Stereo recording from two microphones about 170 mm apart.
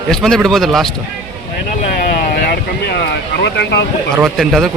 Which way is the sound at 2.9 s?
75° left (ahead or behind).